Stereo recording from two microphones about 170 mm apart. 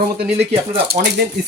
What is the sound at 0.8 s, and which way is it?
Speech, 65° right (ahead or behind).